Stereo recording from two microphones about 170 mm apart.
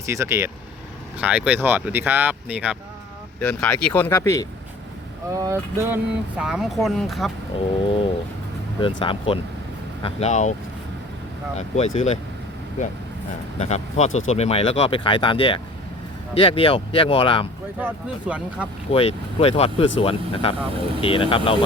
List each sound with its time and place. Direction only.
0.0 s speech: 15° right (ahead or behind)
3.4 s speech: 10° left (ahead or behind)
5.4 s speech: 15° right (ahead or behind)
6.3 s speech: 5° right (ahead or behind)
7.9 s speech: 30° left (ahead or behind)
10.0 s speech: 40° left (ahead or behind)
11.5 s speech: 40° left (ahead or behind)
13.6 s speech: 40° left (ahead or behind)
17.7 s speech: 10° right (ahead or behind)
18.9 s speech: 35° left (ahead or behind)